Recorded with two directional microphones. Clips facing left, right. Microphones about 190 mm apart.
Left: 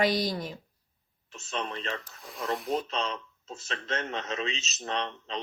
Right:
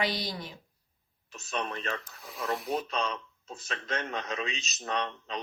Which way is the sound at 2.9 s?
30° left (ahead or behind).